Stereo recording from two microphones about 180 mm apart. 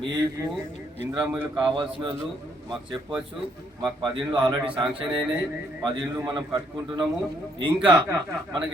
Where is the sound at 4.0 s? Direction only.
25° right (ahead or behind).